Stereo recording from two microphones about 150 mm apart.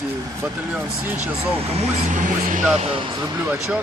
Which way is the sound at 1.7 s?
50° right (ahead or behind).